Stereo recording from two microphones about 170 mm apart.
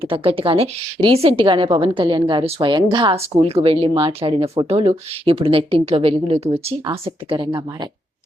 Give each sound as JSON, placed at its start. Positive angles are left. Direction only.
{"t": 0.0, "sound": "a woman's voice", "side_deg": -30}